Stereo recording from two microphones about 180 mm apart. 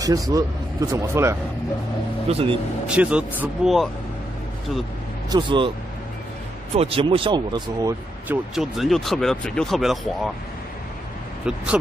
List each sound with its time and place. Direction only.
0.0 s speech: 20° right (ahead or behind)
2.2 s speech: 30° right (ahead or behind)
2.9 s speech: 5° right (ahead or behind)
5.3 s speech: 25° right (ahead or behind)
6.7 s speech: 35° right (ahead or behind)
8.3 s speech: centre (ahead or behind)
11.4 s speech: 5° right (ahead or behind)